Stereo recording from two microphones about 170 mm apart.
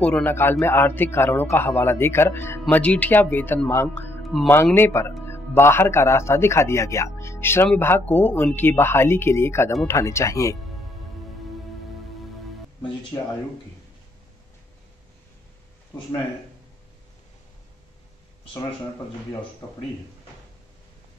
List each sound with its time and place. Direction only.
0.0 s speech: 10° left (ahead or behind)
4.3 s speech: centre (ahead or behind)
4.7 s speech: 15° left (ahead or behind)